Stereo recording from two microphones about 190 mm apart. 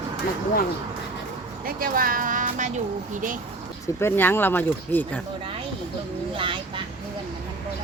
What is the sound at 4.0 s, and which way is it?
Speech, 10° left (ahead or behind).